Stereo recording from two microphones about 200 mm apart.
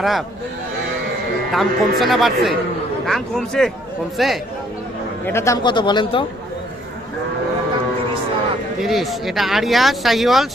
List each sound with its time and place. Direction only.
0.0 s speech: centre (ahead or behind)
1.5 s speech: centre (ahead or behind)
5.2 s a man's voice: 15° left (ahead or behind)
8.8 s speech: centre (ahead or behind)